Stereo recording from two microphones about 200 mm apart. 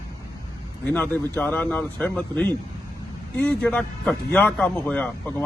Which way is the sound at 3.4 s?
5° left (ahead or behind).